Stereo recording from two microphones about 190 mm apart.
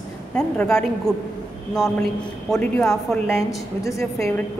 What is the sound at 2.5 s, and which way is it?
A woman's voice, 5° left (ahead or behind).